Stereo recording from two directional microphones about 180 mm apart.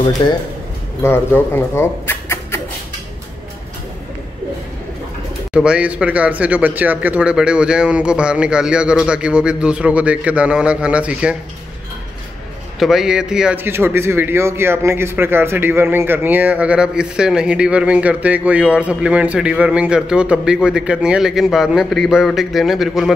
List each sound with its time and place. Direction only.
0.2 s speech: 25° left (ahead or behind)
1.0 s speech: 10° left (ahead or behind)
5.5 s a man's voice: 5° right (ahead or behind)
12.7 s a man's voice: centre (ahead or behind)